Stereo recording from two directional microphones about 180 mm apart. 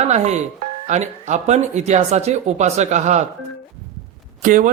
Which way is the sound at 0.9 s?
40° right (ahead or behind).